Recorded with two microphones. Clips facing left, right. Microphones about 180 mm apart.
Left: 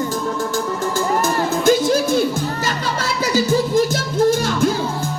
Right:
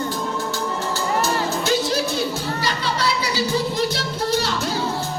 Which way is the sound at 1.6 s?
50° left (ahead or behind).